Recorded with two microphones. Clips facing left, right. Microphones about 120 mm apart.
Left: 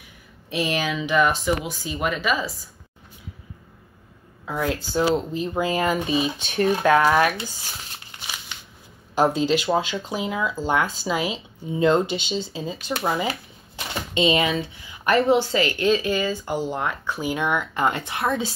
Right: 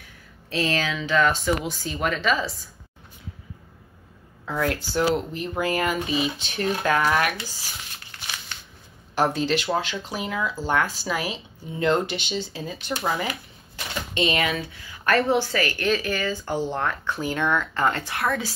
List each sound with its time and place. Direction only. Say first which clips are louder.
0.5 s speech: left 1 dB; 15° left (ahead or behind)
1.4 s speech: even; 5° left (ahead or behind)
4.5 s speech: even; 20° left (ahead or behind)
7.2 s speech: left 4 dB; 25° left (ahead or behind)
9.1 s speech: left 3 dB; 20° left (ahead or behind)
16.4 s speech: even; 10° left (ahead or behind); by 18.5 s 25° left (ahead or behind)